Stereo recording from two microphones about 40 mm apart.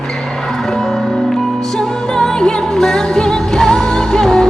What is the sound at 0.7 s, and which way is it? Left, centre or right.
Music, centre.